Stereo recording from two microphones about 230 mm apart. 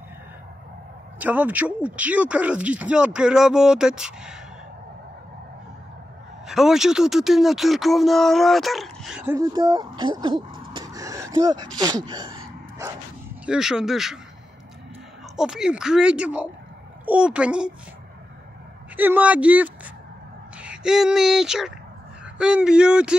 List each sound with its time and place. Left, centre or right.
1.2 s speech: centre
6.4 s speech: centre
10.7 s gasp: centre
13.5 s speech: centre
15.3 s speech: centre
18.9 s speech: centre